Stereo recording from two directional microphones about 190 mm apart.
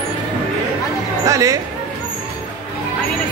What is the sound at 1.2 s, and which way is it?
Speech, 15° right (ahead or behind).